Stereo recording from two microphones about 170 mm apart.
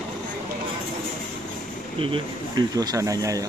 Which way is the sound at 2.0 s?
30° right (ahead or behind).